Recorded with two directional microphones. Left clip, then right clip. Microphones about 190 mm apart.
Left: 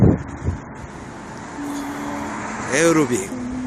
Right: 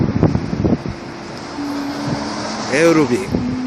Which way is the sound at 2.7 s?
5° left (ahead or behind).